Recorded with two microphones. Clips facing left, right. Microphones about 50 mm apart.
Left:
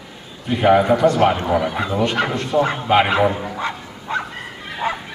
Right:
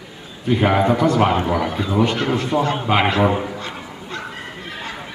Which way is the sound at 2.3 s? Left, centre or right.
Centre.